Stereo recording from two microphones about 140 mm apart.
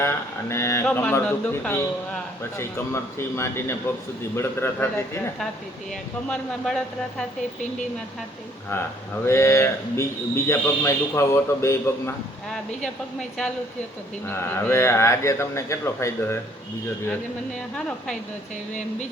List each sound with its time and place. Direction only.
0.0 s a man's voice: 20° left (ahead or behind)
6.2 s a man's voice: 5° left (ahead or behind)
9.2 s a man's voice: 20° left (ahead or behind)
14.3 s a man's voice: 20° left (ahead or behind)